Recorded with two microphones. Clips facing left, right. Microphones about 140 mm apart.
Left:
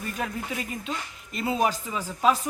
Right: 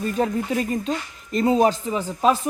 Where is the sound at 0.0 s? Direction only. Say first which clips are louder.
Right 9 dB; 35° right (ahead or behind).